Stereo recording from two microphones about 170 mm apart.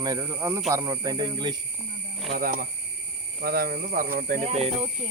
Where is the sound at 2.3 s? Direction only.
55° right (ahead or behind); by 4.7 s 40° right (ahead or behind).